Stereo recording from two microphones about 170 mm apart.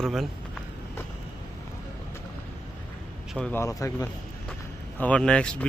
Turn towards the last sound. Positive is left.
turn(degrees=5)  # may be behind; listen again after turning